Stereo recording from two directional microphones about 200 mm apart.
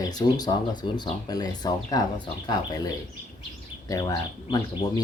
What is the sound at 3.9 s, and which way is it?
Speech, 20° left (ahead or behind).